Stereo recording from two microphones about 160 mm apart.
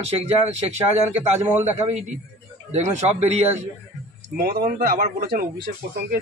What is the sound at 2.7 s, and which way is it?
Speech, 45° right (ahead or behind).